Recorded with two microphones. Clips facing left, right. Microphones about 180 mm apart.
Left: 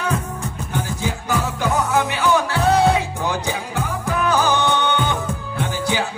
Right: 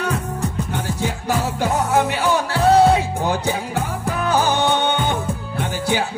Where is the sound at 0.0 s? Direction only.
65° right (ahead or behind).